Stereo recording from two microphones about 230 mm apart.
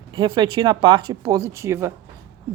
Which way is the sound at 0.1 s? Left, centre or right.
Centre.